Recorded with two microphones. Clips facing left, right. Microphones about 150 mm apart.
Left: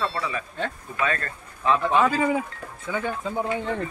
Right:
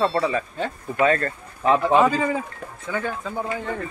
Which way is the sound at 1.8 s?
15° right (ahead or behind).